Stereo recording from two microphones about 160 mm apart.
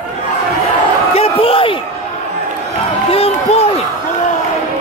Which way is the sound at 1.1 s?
35° left (ahead or behind).